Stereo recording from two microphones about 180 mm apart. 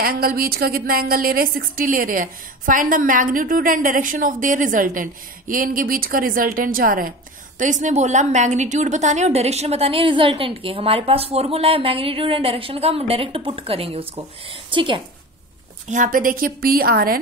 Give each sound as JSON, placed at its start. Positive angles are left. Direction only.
{"t": 0.0, "sound": "a woman's voice", "side_deg": -55}
{"t": 15.9, "sound": "a woman's voice", "side_deg": -50}